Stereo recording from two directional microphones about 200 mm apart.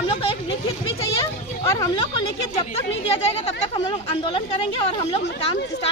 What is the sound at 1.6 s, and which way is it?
Speech, 20° left (ahead or behind).